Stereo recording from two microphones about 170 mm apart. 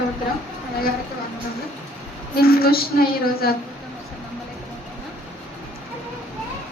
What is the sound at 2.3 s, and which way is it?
A woman's voice, 65° left (ahead or behind).